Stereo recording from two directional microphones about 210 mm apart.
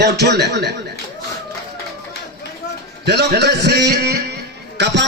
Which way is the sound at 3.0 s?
55° right (ahead or behind).